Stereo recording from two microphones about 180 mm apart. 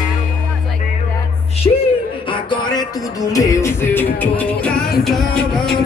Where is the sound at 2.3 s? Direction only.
25° left (ahead or behind); by 5.7 s centre (ahead or behind).